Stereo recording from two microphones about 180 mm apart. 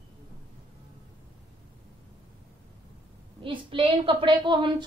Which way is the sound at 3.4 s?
30° right (ahead or behind).